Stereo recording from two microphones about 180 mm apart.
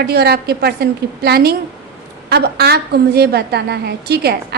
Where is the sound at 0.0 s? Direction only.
60° right (ahead or behind).